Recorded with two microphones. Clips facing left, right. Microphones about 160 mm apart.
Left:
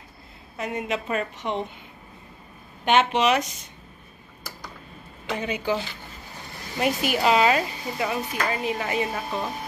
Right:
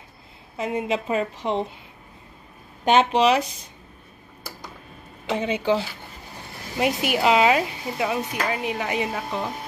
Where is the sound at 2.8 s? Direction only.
35° right (ahead or behind).